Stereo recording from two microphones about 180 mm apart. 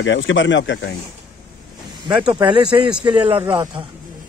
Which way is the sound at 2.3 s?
25° right (ahead or behind).